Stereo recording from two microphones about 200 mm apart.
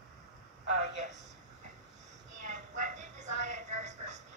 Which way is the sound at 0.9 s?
35° right (ahead or behind).